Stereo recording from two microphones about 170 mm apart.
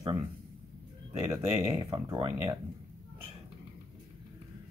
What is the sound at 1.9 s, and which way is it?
Speech, 25° right (ahead or behind).